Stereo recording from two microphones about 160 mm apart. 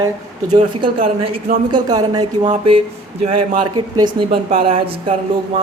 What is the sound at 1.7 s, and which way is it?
Speech, 25° right (ahead or behind).